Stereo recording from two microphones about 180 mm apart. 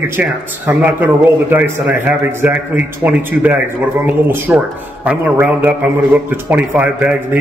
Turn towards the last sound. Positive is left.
turn(degrees=-10)  # may be behind; listen again after turning